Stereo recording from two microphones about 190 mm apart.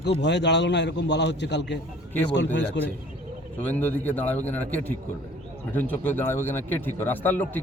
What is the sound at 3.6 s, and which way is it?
A man's voice, 10° left (ahead or behind).